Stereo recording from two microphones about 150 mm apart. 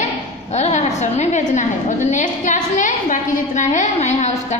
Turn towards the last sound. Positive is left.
turn(degrees=50)  # may be behind; listen again after turning